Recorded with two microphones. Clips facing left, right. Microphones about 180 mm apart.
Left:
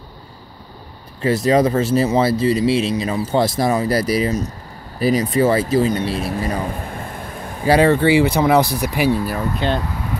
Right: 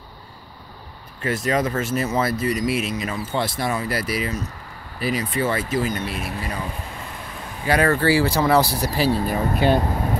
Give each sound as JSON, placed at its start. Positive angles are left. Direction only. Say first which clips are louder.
{"t": 1.2, "sound": "speech", "louder": "left 7 dB", "side_deg": 35}
{"t": 6.3, "sound": "speech", "louder": "left 7 dB", "side_deg": 45}
{"t": 7.6, "sound": "speech", "louder": "left 5 dB", "side_deg": 30}
{"t": 9.8, "sound": "air conditioning", "louder": "right 3 dB", "side_deg": -40}